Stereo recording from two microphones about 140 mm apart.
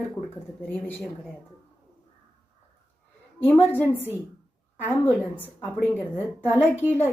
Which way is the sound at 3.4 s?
15° left (ahead or behind).